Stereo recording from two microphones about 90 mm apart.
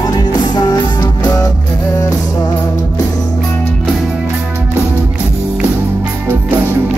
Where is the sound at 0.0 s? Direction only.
50° left (ahead or behind).